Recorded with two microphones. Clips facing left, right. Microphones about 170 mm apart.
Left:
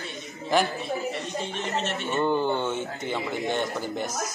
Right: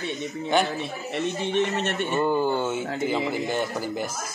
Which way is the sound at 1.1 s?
65° right (ahead or behind).